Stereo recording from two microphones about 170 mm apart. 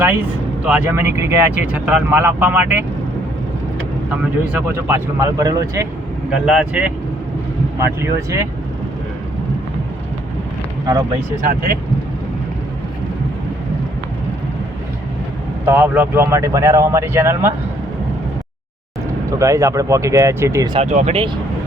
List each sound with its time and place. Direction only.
0.6 s speech: 10° right (ahead or behind)
4.9 s speech: 15° right (ahead or behind)
6.3 s speech: 5° right (ahead or behind)
7.8 s speech: 15° right (ahead or behind)
10.9 s speech: 20° right (ahead or behind)
11.4 s speech: 60° right (ahead or behind)
15.6 s speech: 10° right (ahead or behind)
19.4 s speech: 20° right (ahead or behind)
20.7 s speech: 45° right (ahead or behind)